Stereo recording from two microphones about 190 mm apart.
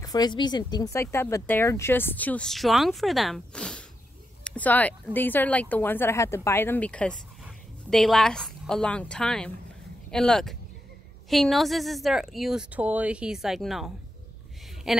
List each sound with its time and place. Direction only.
0.0 s a woman's voice: 20° left (ahead or behind); by 15.0 s centre (ahead or behind)